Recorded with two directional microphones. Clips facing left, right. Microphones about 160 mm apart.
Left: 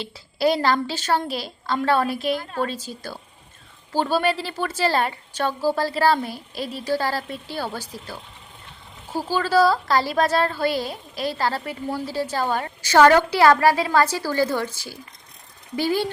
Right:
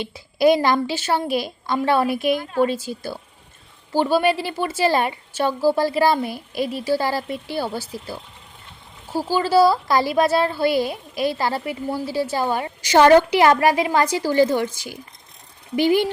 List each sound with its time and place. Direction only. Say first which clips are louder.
0.0 s a woman's voice: right 5 dB; 15° right (ahead or behind)
15.7 s a woman's voice: right 5 dB; 15° right (ahead or behind)